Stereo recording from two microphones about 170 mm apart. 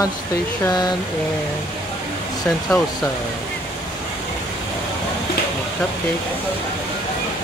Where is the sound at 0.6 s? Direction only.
25° left (ahead or behind).